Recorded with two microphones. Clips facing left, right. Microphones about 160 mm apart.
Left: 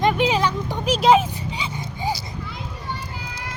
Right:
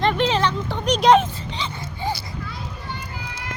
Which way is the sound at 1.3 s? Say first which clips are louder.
Left 1 dB; 10° left (ahead or behind).